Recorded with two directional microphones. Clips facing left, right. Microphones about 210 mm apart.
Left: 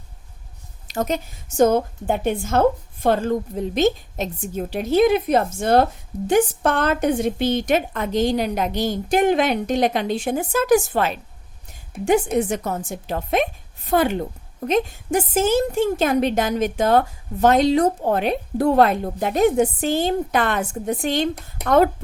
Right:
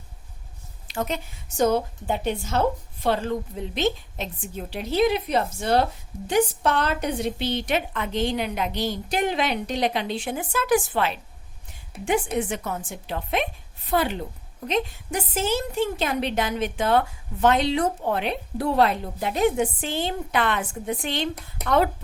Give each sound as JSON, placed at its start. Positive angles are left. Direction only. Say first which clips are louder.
{"t": 0.9, "sound": "a woman's voice", "louder": "left 5 dB", "side_deg": 40}
{"t": 12.4, "sound": "a woman's voice", "louder": "left 5 dB", "side_deg": 40}